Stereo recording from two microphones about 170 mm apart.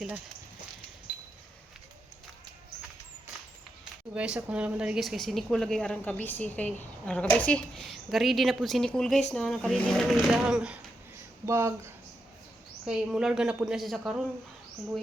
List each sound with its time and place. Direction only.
4.1 s speech: 5° right (ahead or behind)
11.4 s speech: 15° right (ahead or behind)
12.8 s speech: 5° right (ahead or behind)